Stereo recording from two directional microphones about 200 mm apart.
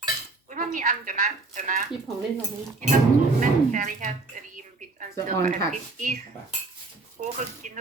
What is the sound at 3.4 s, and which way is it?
Speech, 40° right (ahead or behind).